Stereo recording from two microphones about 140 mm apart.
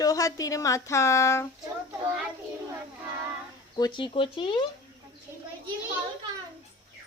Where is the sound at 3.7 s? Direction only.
30° left (ahead or behind).